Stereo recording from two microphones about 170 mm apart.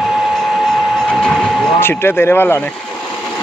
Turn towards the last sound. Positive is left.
turn(degrees=10)  # may be behind; listen again after turning